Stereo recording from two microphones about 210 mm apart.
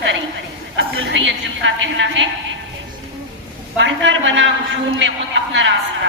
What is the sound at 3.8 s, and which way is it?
A woman's voice, 60° right (ahead or behind).